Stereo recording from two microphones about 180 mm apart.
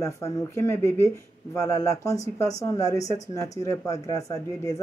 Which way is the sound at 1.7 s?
20° left (ahead or behind).